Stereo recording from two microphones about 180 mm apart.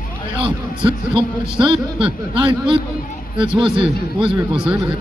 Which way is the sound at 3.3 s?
5° right (ahead or behind).